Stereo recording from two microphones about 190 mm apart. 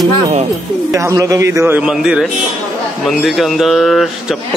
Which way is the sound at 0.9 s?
15° right (ahead or behind).